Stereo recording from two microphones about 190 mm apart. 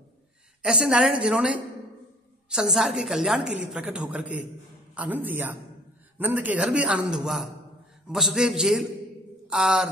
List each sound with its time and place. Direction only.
0.6 s a woman's voice: 5° right (ahead or behind)